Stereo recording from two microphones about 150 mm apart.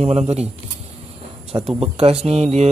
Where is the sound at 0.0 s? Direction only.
45° right (ahead or behind).